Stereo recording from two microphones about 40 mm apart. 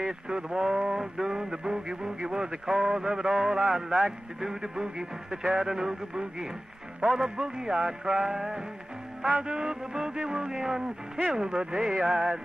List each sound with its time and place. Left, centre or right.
0.0 s speech: centre